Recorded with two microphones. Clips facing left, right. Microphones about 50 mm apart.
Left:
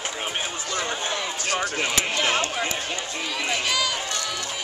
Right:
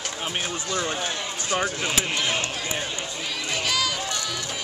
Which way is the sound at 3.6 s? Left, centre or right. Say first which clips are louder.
Right 2 dB; centre.